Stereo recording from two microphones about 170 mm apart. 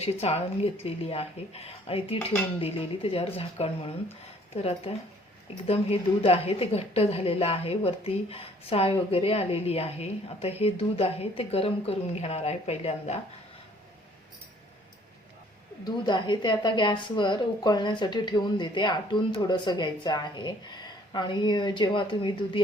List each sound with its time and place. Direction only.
0.0 s a woman's voice: 40° left (ahead or behind)
15.8 s a woman's voice: 25° left (ahead or behind)